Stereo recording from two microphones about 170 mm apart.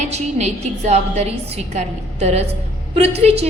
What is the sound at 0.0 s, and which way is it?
A woman's voice, 40° right (ahead or behind).